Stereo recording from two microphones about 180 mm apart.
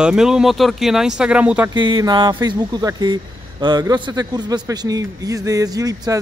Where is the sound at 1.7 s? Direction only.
20° right (ahead or behind).